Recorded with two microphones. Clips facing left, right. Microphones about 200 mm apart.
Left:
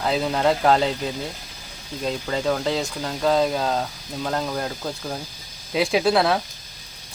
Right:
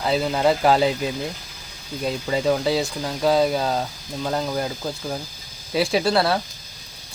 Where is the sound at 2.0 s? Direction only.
10° right (ahead or behind).